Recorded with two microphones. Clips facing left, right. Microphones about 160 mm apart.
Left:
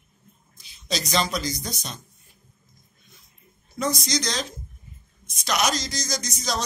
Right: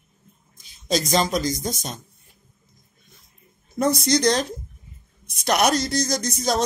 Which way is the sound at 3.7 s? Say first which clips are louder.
Right 6 dB; 55° right (ahead or behind).